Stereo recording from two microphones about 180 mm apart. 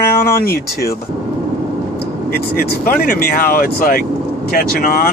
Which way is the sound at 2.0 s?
60° left (ahead or behind).